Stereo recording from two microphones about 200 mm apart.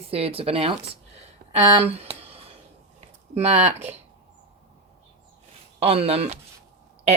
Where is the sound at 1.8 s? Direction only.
30° right (ahead or behind).